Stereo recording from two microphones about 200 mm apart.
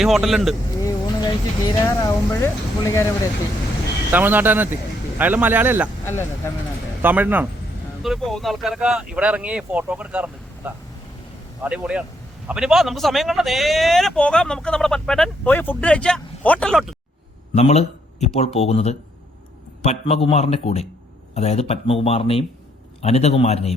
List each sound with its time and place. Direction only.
0.0 s speech: centre (ahead or behind)
0.8 s speech: 20° left (ahead or behind)
4.1 s a man's voice: 10° right (ahead or behind)
6.1 s speech: 10° left (ahead or behind)
7.0 s a man's voice: 10° right (ahead or behind)
17.5 s a man's voice: 35° left (ahead or behind)